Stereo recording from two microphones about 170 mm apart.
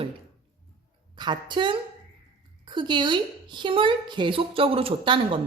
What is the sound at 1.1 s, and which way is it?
A woman's voice, 25° right (ahead or behind).